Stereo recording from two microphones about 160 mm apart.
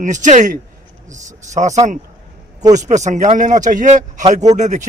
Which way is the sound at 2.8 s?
50° right (ahead or behind).